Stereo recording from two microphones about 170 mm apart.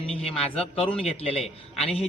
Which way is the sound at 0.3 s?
35° left (ahead or behind).